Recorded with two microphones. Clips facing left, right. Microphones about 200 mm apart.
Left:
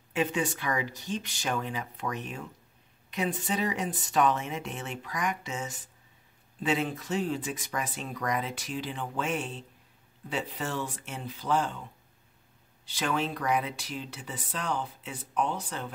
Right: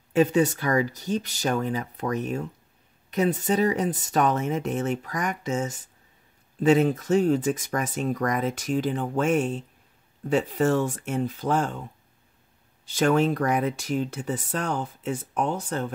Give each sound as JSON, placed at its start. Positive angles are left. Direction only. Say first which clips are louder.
{"t": 0.1, "sound": "speech", "louder": "right 9 dB", "side_deg": -40}
{"t": 12.8, "sound": "speech", "louder": "right 9 dB", "side_deg": -45}